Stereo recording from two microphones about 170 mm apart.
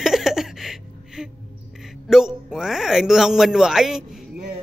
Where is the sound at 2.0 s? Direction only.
Centre (ahead or behind).